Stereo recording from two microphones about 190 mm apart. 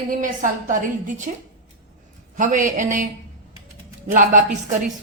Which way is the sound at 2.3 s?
45° right (ahead or behind).